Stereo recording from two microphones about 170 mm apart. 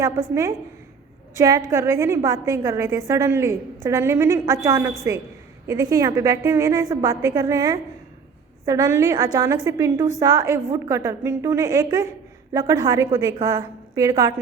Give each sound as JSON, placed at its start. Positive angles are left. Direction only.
{"t": 0.0, "sound": "a woman's voice", "side_deg": -20}